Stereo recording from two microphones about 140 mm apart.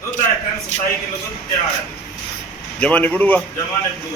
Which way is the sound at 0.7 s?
55° left (ahead or behind).